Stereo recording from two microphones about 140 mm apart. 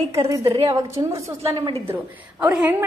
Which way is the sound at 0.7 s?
20° right (ahead or behind).